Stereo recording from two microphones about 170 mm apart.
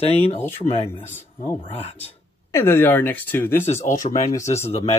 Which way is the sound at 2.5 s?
15° left (ahead or behind).